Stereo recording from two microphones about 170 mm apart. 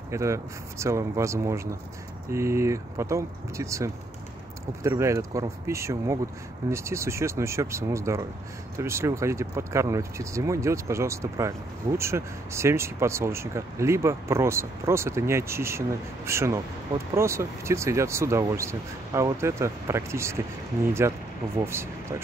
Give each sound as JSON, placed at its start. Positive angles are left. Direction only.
{"t": 0.1, "sound": "speech", "side_deg": -15}